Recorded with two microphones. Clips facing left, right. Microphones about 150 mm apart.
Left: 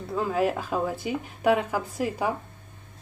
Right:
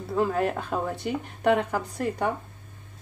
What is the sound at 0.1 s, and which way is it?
Speech, 5° left (ahead or behind).